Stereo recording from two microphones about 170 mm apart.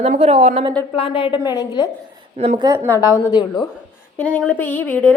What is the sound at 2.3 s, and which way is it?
Speech, 40° right (ahead or behind).